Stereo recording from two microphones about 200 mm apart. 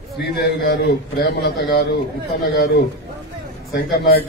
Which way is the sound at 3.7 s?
55° left (ahead or behind).